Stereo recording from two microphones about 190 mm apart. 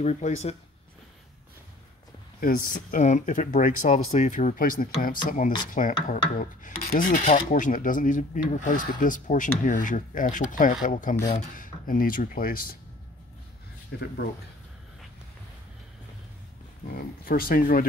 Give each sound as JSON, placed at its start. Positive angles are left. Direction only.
{"t": 0.0, "sound": "speech", "side_deg": 35}
{"t": 2.4, "sound": "speech", "side_deg": 50}
{"t": 13.9, "sound": "speech", "side_deg": 55}
{"t": 16.8, "sound": "speech", "side_deg": 50}